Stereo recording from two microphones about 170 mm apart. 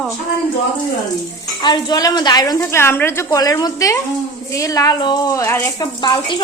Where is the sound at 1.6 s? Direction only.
25° left (ahead or behind).